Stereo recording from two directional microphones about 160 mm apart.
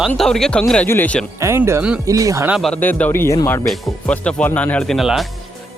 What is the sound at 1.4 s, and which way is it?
Speech, 15° right (ahead or behind).